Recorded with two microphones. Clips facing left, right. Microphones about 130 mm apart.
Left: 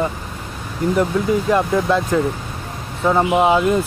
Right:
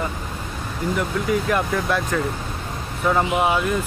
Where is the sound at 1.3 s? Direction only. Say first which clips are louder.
Left 4 dB; 25° left (ahead or behind).